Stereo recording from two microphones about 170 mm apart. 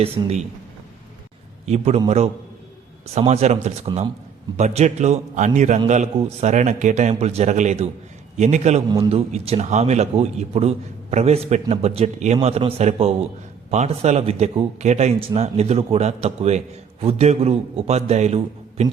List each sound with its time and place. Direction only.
0.0 s a man's voice: 35° right (ahead or behind)
1.6 s a man's voice: 40° right (ahead or behind)
3.9 s a man's voice: 25° right (ahead or behind)
4.5 s a man's voice: 40° right (ahead or behind)
8.9 s a man's voice: 30° right (ahead or behind)